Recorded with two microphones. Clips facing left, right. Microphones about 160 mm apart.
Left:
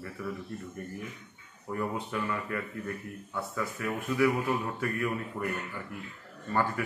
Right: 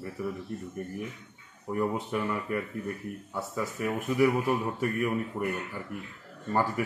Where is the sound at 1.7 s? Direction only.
20° right (ahead or behind).